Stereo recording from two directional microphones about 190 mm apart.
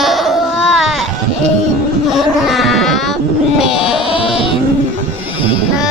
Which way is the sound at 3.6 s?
5° right (ahead or behind).